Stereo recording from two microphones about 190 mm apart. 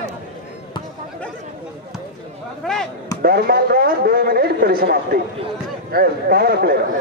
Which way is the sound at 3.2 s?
55° right (ahead or behind).